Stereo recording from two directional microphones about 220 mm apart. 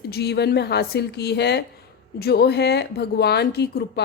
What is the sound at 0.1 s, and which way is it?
Speech, 50° left (ahead or behind).